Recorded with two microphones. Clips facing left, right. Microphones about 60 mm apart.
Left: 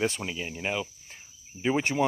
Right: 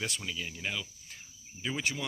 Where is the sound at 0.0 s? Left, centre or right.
Left.